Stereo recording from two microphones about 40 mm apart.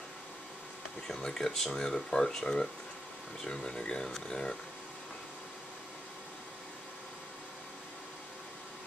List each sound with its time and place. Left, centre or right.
1.0 s speech: centre